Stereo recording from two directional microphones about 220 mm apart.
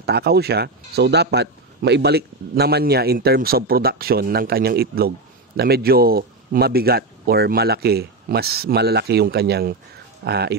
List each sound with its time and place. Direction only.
0.0 s speech: 45° right (ahead or behind)